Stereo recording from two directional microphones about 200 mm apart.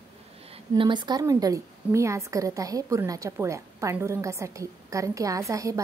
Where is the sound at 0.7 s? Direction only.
25° right (ahead or behind).